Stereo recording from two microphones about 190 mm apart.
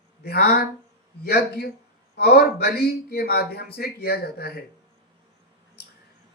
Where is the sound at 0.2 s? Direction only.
55° left (ahead or behind).